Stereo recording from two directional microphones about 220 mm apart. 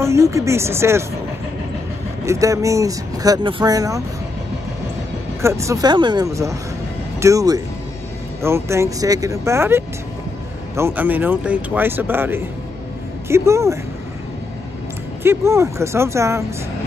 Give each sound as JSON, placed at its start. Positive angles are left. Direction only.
{"t": 0.0, "sound": "speech", "side_deg": -15}
{"t": 2.2, "sound": "speech", "side_deg": -15}
{"t": 5.4, "sound": "speech", "side_deg": -15}
{"t": 15.2, "sound": "speech", "side_deg": -10}